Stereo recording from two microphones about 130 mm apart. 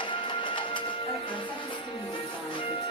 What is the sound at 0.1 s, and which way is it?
Music, 40° left (ahead or behind).